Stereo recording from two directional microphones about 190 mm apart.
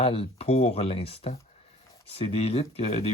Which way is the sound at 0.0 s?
30° left (ahead or behind).